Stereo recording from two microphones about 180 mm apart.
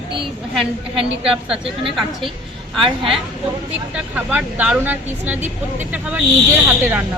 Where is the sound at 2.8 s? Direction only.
30° right (ahead or behind).